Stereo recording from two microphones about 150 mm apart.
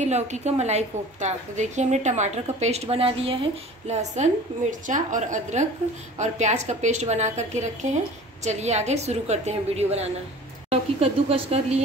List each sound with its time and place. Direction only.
0.0 s a woman's voice: 50° right (ahead or behind)